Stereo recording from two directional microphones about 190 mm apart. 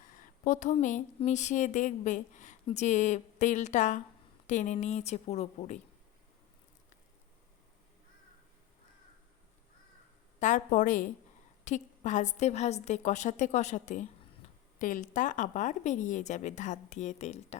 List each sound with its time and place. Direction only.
0.1 s speech: 40° left (ahead or behind)
10.4 s a woman's voice: 40° left (ahead or behind)